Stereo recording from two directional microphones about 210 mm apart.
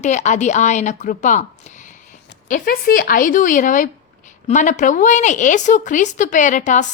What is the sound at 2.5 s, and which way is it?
A woman's voice, 40° left (ahead or behind).